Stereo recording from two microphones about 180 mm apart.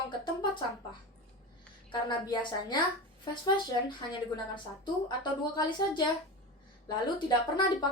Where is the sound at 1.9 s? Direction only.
25° left (ahead or behind).